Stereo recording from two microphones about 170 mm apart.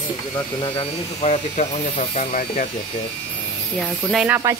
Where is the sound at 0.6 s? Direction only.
35° left (ahead or behind); by 2.7 s 50° left (ahead or behind).